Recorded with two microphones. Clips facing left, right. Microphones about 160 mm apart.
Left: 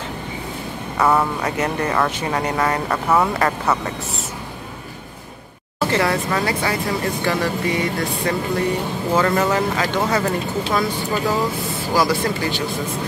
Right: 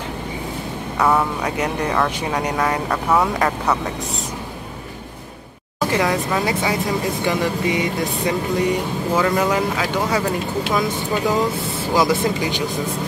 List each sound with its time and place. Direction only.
0.9 s speech: centre (ahead or behind)
1.6 s speech: 10° right (ahead or behind)
2.5 s speech: centre (ahead or behind)
5.8 s speech: 15° right (ahead or behind)